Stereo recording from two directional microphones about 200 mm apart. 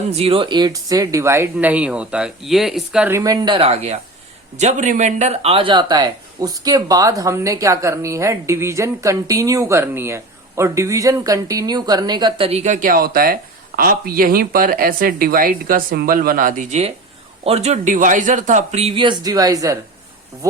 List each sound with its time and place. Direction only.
0.1 s speech: 30° right (ahead or behind)